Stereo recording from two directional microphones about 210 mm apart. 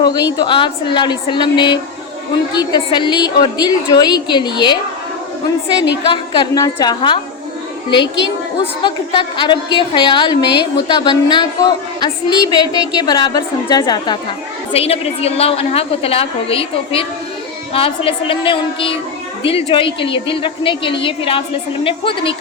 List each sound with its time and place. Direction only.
0.0 s a woman's voice: 20° left (ahead or behind)
6.3 s a woman's voice: 20° left (ahead or behind)
8.0 s a woman's voice: 60° left (ahead or behind)
8.8 s a woman's voice: 25° left (ahead or behind)